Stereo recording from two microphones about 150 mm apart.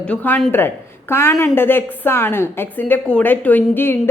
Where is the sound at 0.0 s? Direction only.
10° left (ahead or behind).